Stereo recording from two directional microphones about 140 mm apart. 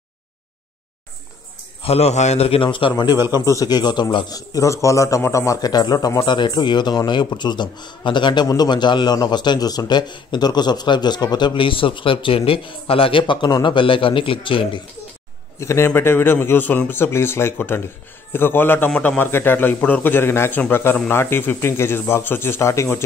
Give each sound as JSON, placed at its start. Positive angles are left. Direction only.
{"t": 1.8, "sound": "a man's voice", "side_deg": 45}
{"t": 3.2, "sound": "a man's voice", "side_deg": -15}
{"t": 3.4, "sound": "a man's voice", "side_deg": 25}
{"t": 15.6, "sound": "speech", "side_deg": 20}